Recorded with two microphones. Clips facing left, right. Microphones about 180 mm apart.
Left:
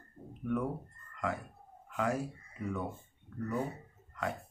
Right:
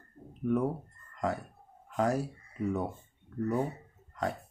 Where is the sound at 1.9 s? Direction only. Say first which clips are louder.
Right 4 dB; 40° right (ahead or behind).